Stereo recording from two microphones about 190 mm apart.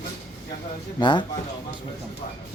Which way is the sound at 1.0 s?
25° left (ahead or behind).